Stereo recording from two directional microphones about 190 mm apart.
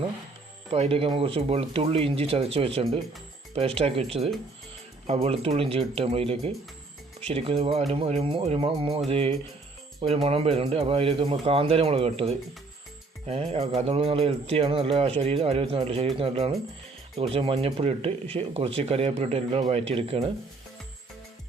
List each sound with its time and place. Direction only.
0.7 s speech: 30° right (ahead or behind)
5.0 s speech: 30° right (ahead or behind)